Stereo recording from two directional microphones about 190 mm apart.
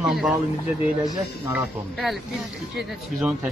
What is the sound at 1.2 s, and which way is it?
Speech, 15° right (ahead or behind).